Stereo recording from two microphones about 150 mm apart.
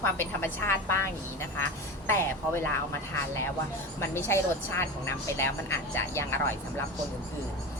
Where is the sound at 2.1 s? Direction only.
15° left (ahead or behind).